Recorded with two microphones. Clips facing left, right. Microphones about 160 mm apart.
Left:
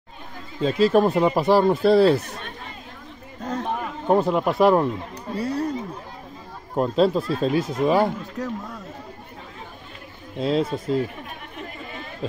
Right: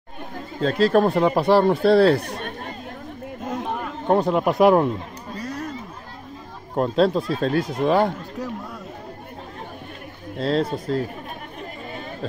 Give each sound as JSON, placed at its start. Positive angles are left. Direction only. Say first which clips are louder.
{"t": 0.6, "sound": "speech", "louder": "even", "side_deg": 5}
{"t": 2.1, "sound": "chatter", "louder": "right 2 dB", "side_deg": -60}
{"t": 4.1, "sound": "speech", "louder": "right 1 dB", "side_deg": 0}
{"t": 5.4, "sound": "a sound", "louder": "left 6 dB", "side_deg": 30}
{"t": 6.7, "sound": "speech", "louder": "even", "side_deg": 0}
{"t": 10.3, "sound": "speech", "louder": "even", "side_deg": 5}